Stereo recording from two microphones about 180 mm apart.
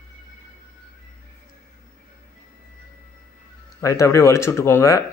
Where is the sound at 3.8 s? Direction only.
20° left (ahead or behind).